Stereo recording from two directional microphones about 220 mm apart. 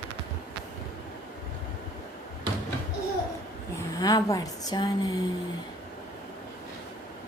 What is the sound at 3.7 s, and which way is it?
Speech, 15° left (ahead or behind).